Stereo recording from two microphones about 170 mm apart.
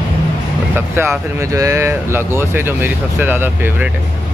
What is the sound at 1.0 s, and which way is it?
Speech, 15° right (ahead or behind).